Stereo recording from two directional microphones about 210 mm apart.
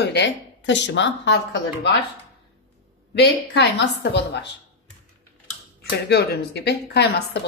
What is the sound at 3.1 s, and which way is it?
A woman's voice, 55° left (ahead or behind).